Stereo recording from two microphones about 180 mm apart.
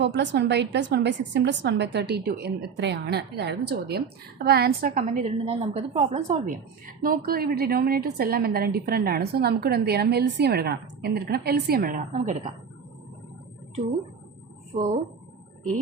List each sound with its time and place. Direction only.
0.0 s a woman's voice: 75° right (ahead or behind); by 5.3 s 50° right (ahead or behind)
5.5 s a woman's voice: 35° right (ahead or behind)
14.7 s speech: 35° right (ahead or behind)